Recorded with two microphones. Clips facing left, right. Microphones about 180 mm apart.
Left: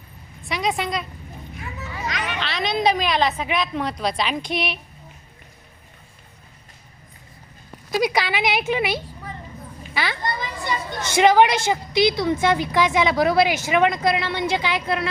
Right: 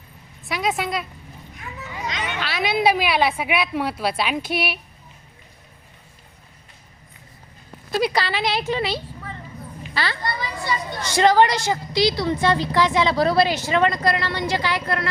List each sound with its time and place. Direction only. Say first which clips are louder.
0.4 s a woman's voice: even; centre (ahead or behind)
2.2 s a woman's voice: right 2 dB; 5° right (ahead or behind)
8.1 s a woman's voice: left 1 dB; 15° left (ahead or behind)